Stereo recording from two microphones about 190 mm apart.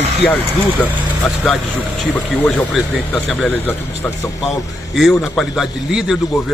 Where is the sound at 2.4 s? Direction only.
5° left (ahead or behind).